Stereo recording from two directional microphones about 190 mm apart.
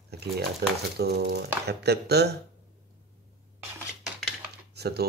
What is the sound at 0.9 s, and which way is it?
Speech, 55° right (ahead or behind).